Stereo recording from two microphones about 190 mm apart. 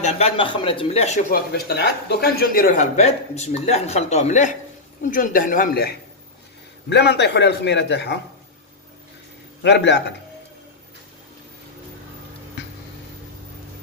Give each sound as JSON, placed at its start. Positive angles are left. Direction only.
{"t": 0.0, "sound": "speech", "side_deg": 30}
{"t": 1.3, "sound": "speech", "side_deg": 55}
{"t": 6.9, "sound": "a man's voice", "side_deg": 60}
{"t": 9.6, "sound": "a man's voice", "side_deg": 65}